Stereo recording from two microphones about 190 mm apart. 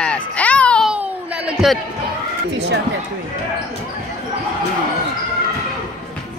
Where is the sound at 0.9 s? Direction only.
5° right (ahead or behind).